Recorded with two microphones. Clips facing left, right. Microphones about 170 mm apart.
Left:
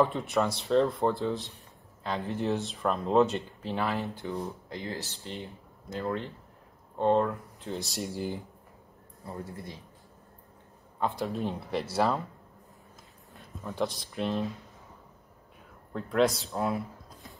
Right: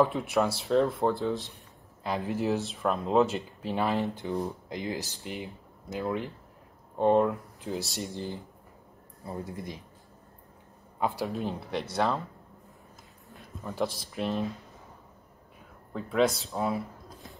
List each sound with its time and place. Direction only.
0.0 s speech: centre (ahead or behind)
3.6 s speech: 15° right (ahead or behind)
7.7 s speech: centre (ahead or behind)
9.2 s speech: 15° right (ahead or behind)
11.0 s speech: centre (ahead or behind)
13.3 s speech: centre (ahead or behind)
15.9 s speech: centre (ahead or behind)